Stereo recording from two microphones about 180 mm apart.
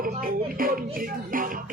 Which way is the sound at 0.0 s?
50° right (ahead or behind).